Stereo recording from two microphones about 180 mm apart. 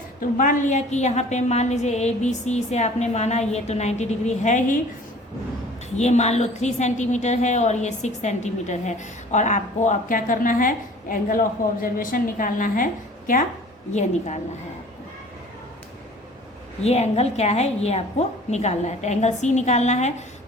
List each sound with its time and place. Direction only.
0.2 s a woman's voice: 45° left (ahead or behind)
6.0 s a woman's voice: 40° left (ahead or behind)
16.8 s a woman's voice: 35° left (ahead or behind)